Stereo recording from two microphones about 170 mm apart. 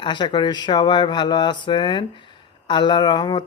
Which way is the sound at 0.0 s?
30° left (ahead or behind).